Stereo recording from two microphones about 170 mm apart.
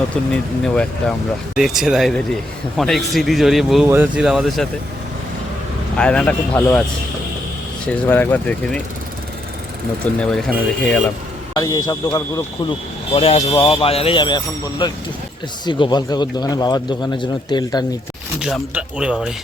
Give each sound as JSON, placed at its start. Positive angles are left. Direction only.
{"t": 0.3, "sound": "a man's voice", "side_deg": 5}
{"t": 6.0, "sound": "speech", "side_deg": 5}
{"t": 7.9, "sound": "speech", "side_deg": 10}
{"t": 10.2, "sound": "a man's voice", "side_deg": 5}
{"t": 11.5, "sound": "speech", "side_deg": 20}
{"t": 13.1, "sound": "speech", "side_deg": 35}
{"t": 18.3, "sound": "a man's voice", "side_deg": -5}